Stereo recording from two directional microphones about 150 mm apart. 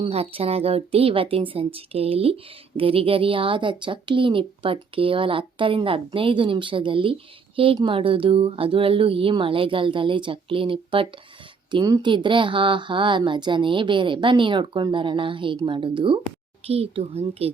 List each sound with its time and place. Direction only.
0.0 s a woman's voice: 40° right (ahead or behind)